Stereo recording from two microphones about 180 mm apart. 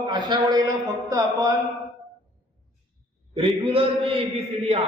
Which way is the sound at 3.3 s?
30° right (ahead or behind).